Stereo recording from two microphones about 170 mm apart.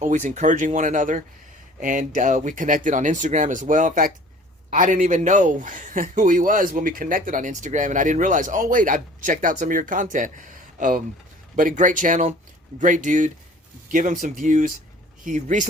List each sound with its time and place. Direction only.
0.0 s speech: 50° right (ahead or behind)